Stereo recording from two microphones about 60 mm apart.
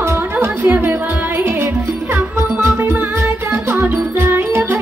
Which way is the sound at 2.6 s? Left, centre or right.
Right.